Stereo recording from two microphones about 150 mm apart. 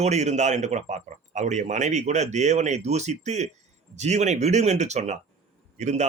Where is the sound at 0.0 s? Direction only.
50° right (ahead or behind).